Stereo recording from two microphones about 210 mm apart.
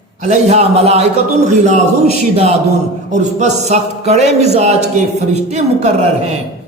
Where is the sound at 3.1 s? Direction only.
35° right (ahead or behind).